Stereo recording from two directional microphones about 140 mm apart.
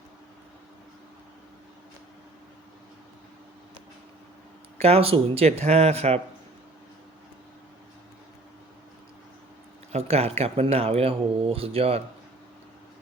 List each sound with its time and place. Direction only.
4.8 s speech: 45° right (ahead or behind)
9.9 s speech: 45° right (ahead or behind)